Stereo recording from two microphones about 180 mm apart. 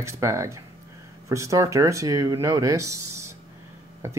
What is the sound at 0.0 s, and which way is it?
Speech, 15° right (ahead or behind).